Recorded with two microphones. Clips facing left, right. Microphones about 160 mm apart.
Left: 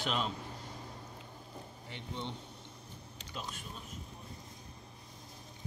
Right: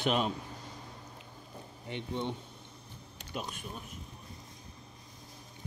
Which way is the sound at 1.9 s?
15° right (ahead or behind).